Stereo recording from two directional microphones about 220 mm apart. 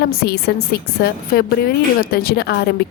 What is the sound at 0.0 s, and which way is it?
A woman's voice, 45° left (ahead or behind).